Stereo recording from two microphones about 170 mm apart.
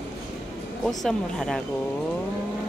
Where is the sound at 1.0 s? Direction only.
5° left (ahead or behind).